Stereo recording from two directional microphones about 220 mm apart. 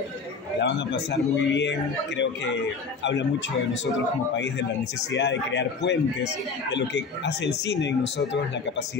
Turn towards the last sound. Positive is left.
turn(degrees=50)  # may be behind; listen again after turning